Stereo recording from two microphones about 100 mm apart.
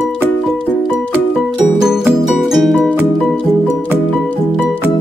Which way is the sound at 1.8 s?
5° right (ahead or behind).